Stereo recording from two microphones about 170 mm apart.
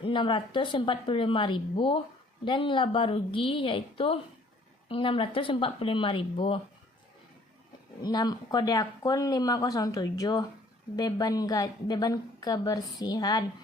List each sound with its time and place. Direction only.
0.0 s a woman's voice: 30° left (ahead or behind)
8.0 s a woman's voice: 25° left (ahead or behind)